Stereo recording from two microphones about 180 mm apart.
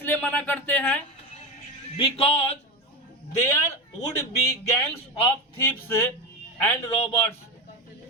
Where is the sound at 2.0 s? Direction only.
35° left (ahead or behind).